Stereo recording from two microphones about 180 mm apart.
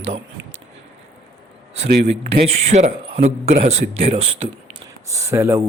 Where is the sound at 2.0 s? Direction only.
35° right (ahead or behind).